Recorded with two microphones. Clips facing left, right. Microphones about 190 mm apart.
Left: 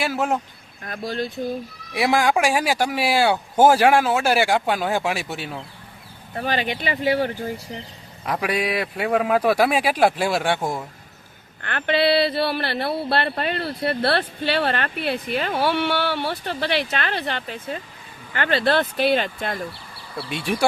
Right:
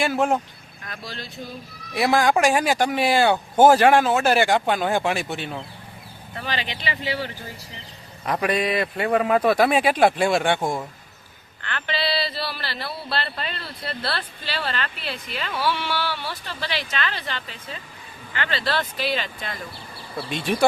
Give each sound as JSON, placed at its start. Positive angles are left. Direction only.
{"t": 0.0, "sound": "speech", "side_deg": 5}
{"t": 0.9, "sound": "speech", "side_deg": 45}
{"t": 1.9, "sound": "speech", "side_deg": 10}
{"t": 6.3, "sound": "speech", "side_deg": 50}
{"t": 8.2, "sound": "speech", "side_deg": 5}
{"t": 11.6, "sound": "speech", "side_deg": 50}
{"t": 20.1, "sound": "speech", "side_deg": 10}